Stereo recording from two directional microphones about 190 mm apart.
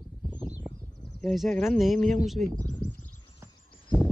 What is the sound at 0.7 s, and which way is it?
Speech, centre (ahead or behind).